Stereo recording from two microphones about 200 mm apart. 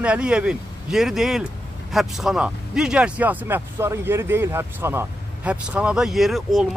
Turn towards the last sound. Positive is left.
turn(degrees=0)  # may be behind; listen again after turning